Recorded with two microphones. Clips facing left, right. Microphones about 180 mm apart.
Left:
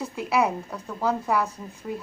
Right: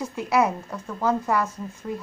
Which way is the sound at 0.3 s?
Centre (ahead or behind).